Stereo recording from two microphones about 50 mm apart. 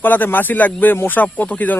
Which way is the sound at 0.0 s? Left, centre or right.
Left.